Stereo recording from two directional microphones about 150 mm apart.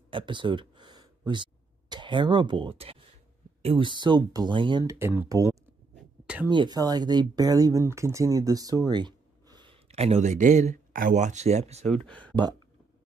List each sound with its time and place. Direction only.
0.1 s a sound: 35° right (ahead or behind)
3.6 s speech: 35° right (ahead or behind)
4.8 s speech: 15° right (ahead or behind)
5.9 s a sound: 5° right (ahead or behind)
6.5 s speech: 30° right (ahead or behind)
9.8 s speech: 45° right (ahead or behind)
12.1 s speech: 10° left (ahead or behind)